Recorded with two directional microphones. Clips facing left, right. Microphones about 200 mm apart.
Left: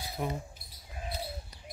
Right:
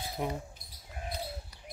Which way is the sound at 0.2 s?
20° right (ahead or behind).